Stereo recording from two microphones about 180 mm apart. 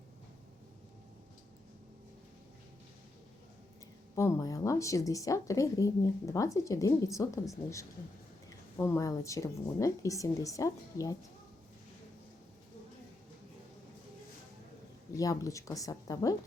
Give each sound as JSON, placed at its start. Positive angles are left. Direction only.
{"t": 4.1, "sound": "speech", "side_deg": 15}
{"t": 15.1, "sound": "a woman's voice", "side_deg": 20}